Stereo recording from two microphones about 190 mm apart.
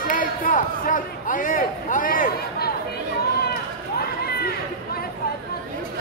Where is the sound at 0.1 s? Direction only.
45° left (ahead or behind).